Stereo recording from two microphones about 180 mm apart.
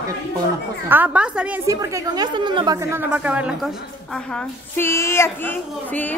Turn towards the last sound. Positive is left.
turn(degrees=10)  # may be behind; listen again after turning